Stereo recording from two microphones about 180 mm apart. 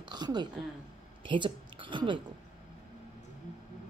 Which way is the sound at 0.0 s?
25° right (ahead or behind).